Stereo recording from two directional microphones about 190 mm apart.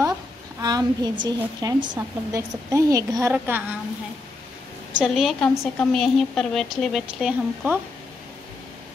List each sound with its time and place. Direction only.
0.6 s a woman's voice: 20° right (ahead or behind)
4.9 s speech: centre (ahead or behind)